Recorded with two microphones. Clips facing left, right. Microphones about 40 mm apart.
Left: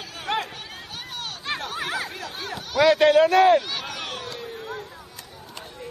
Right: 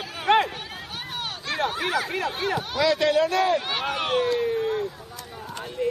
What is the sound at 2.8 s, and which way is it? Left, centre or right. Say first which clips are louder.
Speech: left 5 dB; left.